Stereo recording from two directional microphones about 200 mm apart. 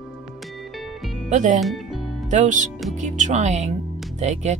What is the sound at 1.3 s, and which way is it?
Music, 40° right (ahead or behind).